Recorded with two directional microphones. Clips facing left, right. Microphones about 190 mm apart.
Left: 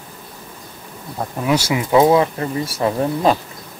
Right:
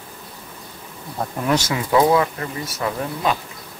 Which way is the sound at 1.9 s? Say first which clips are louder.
Left 3 dB; 25° left (ahead or behind).